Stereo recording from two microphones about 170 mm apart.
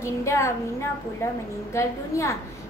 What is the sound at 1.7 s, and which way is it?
Speech, 15° left (ahead or behind).